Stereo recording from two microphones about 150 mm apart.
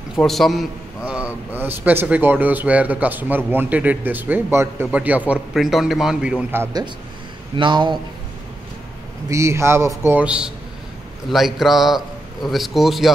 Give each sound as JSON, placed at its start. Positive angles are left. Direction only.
{"t": 0.1, "sound": "a man's voice", "side_deg": 0}
{"t": 7.5, "sound": "speech", "side_deg": -30}
{"t": 9.3, "sound": "a man's voice", "side_deg": -20}